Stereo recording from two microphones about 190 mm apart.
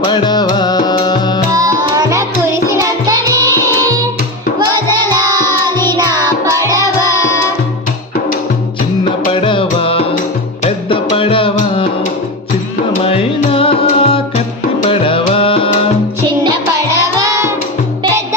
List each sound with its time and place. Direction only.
0.0 s music: 25° left (ahead or behind)
1.5 s music: 15° right (ahead or behind)
4.6 s music: 20° right (ahead or behind)
5.7 s music: 15° left (ahead or behind)
6.0 s music: 20° right (ahead or behind)
9.3 s music: 30° left (ahead or behind)
13.0 s music: 30° left (ahead or behind)
17.2 s music: 15° right (ahead or behind)